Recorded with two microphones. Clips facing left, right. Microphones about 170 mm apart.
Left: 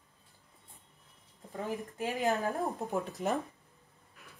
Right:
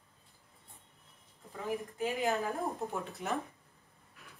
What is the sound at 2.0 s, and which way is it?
Speech, 40° left (ahead or behind).